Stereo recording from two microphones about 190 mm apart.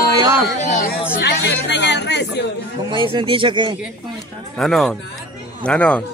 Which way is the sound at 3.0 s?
30° right (ahead or behind).